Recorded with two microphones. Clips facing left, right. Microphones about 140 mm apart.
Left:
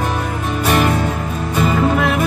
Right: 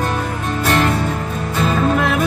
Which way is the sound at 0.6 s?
10° left (ahead or behind).